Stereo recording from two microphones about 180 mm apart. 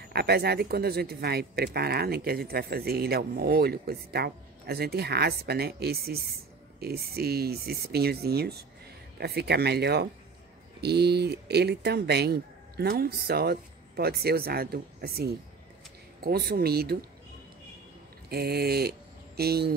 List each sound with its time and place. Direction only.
0.1 s speech: 65° right (ahead or behind)
18.3 s speech: 60° right (ahead or behind)